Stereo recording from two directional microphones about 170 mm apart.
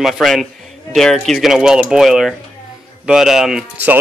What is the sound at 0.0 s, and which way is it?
A man's voice, centre (ahead or behind).